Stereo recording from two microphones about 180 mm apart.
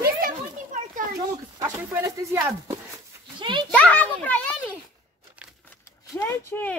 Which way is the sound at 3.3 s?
25° right (ahead or behind).